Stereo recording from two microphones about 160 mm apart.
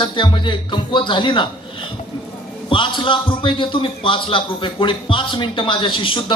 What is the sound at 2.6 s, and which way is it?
A man's voice, 30° left (ahead or behind).